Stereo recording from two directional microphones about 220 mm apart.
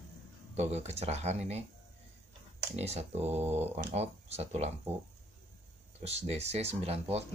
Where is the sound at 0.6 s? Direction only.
30° right (ahead or behind).